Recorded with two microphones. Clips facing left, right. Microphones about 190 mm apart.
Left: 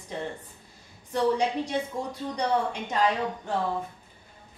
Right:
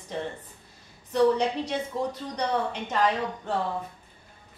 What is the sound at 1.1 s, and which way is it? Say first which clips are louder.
Speech: right 3 dB; 10° left (ahead or behind).